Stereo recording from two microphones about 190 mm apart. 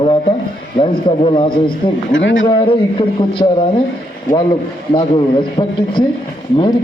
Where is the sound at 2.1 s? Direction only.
80° left.